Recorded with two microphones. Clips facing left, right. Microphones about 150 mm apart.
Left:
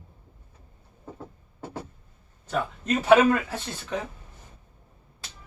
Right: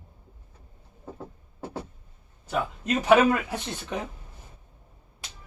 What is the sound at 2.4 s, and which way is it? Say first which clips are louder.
Speech: even; 10° right (ahead or behind).